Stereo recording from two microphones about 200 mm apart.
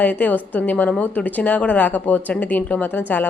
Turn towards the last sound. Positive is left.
turn(degrees=10)  # may be behind; listen again after turning